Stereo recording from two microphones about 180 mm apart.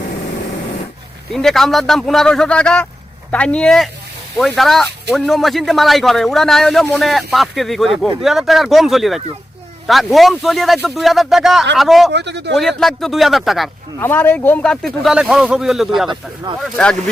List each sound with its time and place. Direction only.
1.3 s a man's voice: centre (ahead or behind)
12.1 s speech: 70° right (ahead or behind)
12.5 s a man's voice: centre (ahead or behind)
14.0 s a man's voice: 10° left (ahead or behind)